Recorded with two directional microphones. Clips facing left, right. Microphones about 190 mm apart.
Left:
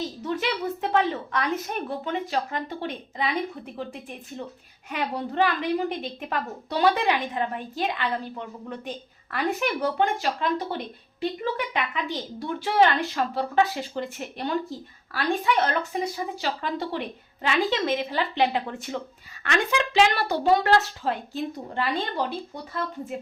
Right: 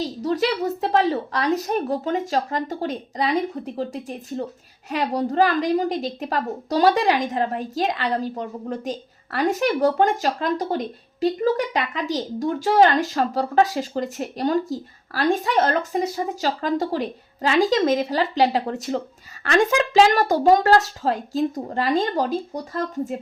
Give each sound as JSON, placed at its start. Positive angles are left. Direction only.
{"t": 0.0, "sound": "a woman's voice", "side_deg": -35}